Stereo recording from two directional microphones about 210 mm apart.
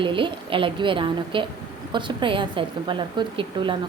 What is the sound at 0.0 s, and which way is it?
A woman's voice, 25° right (ahead or behind).